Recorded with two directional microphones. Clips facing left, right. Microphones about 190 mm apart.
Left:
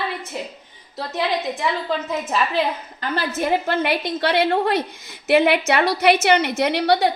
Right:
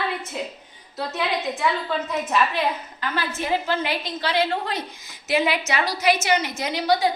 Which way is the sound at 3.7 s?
60° left (ahead or behind).